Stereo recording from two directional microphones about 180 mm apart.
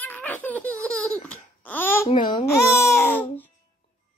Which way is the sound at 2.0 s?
25° left (ahead or behind).